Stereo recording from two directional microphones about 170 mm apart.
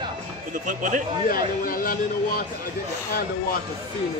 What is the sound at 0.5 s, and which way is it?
Speech, 50° right (ahead or behind).